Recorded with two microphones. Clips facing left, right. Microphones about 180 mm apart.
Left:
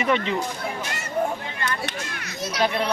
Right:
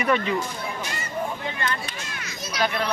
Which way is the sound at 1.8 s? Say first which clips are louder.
Left 4 dB; 60° left (ahead or behind).